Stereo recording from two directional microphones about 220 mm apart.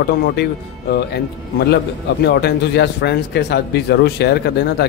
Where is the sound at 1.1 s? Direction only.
50° left (ahead or behind).